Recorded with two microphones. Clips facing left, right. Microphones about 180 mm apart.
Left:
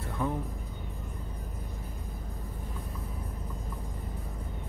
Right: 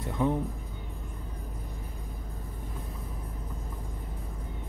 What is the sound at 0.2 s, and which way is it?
Speech, 20° right (ahead or behind).